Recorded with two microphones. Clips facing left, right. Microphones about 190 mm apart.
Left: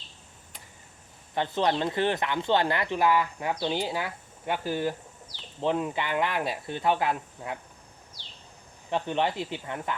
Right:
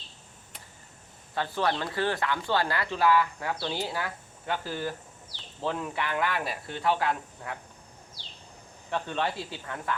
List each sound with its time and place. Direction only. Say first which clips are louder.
1.4 s speech: left 3 dB; 20° left (ahead or behind)
8.9 s speech: left 3 dB; 20° left (ahead or behind)